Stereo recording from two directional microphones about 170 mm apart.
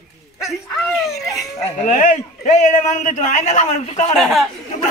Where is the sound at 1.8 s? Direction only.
50° left (ahead or behind).